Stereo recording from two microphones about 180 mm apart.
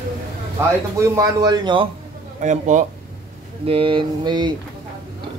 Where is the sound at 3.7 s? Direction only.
30° right (ahead or behind).